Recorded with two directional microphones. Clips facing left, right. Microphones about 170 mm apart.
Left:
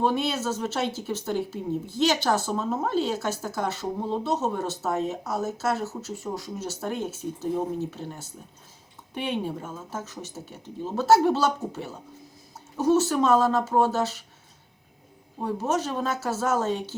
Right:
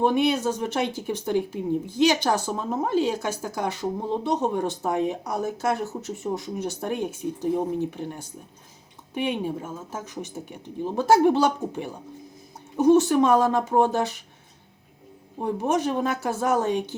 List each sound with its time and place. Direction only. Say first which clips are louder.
0.0 s speech: right 4 dB; 15° right (ahead or behind)
15.4 s speech: right 2 dB; 15° right (ahead or behind)